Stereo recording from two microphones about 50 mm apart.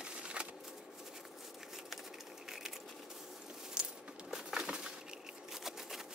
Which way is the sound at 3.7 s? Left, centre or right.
Centre.